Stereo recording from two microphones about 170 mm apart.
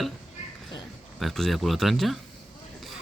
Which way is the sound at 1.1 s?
Centre (ahead or behind).